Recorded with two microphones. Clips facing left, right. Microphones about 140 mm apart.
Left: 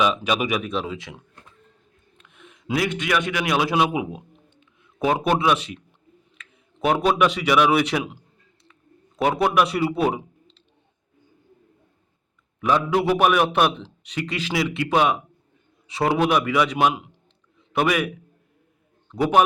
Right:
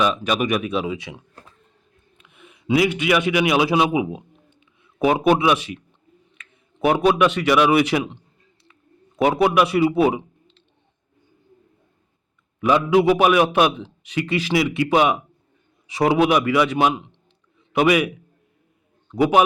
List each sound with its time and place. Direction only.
0.3 s a man's voice: 5° left (ahead or behind)
0.6 s speech: 10° right (ahead or behind)
1.4 s a sound: 35° right (ahead or behind)
2.1 s a man's voice: 5° right (ahead or behind)
9.2 s a man's voice: 5° right (ahead or behind)
12.5 s a man's voice: 5° right (ahead or behind)
19.1 s speech: 5° right (ahead or behind)